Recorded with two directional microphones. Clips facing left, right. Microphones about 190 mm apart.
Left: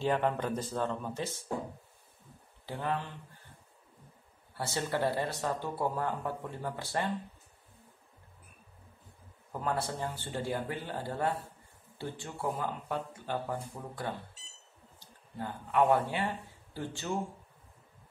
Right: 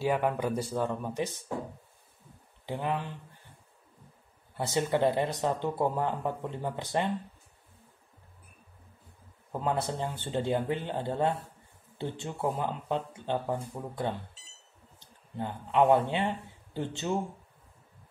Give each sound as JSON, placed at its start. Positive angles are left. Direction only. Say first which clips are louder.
{"t": 0.0, "sound": "speech", "louder": "right 2 dB", "side_deg": -10}
{"t": 2.6, "sound": "speech", "louder": "right 2 dB", "side_deg": -15}
{"t": 4.6, "sound": "speech", "louder": "right 5 dB", "side_deg": -20}
{"t": 9.5, "sound": "speech", "louder": "right 3 dB", "side_deg": -20}